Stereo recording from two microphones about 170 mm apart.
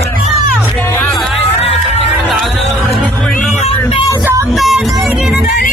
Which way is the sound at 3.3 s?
50° left (ahead or behind).